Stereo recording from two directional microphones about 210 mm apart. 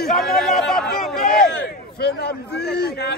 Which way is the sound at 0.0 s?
Centre (ahead or behind).